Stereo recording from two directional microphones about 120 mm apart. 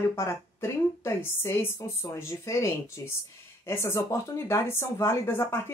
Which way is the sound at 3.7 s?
20° left (ahead or behind).